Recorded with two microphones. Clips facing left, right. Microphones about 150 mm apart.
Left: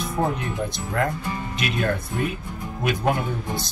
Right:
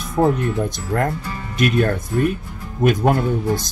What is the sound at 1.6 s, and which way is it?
Speech, 50° right (ahead or behind).